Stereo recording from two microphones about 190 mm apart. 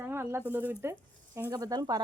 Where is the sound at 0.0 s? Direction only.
10° right (ahead or behind).